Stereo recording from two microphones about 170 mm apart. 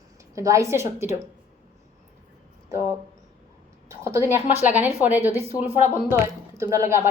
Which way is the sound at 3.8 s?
15° right (ahead or behind).